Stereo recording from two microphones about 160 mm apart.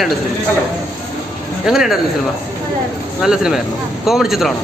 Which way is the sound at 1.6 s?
Centre (ahead or behind).